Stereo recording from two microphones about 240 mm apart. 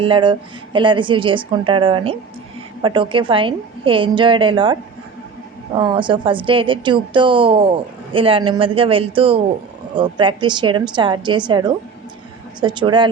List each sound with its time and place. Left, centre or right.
0.0 s a woman's voice: centre